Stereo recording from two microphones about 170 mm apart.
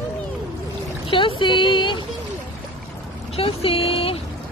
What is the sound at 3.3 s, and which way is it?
Speech, 35° left (ahead or behind).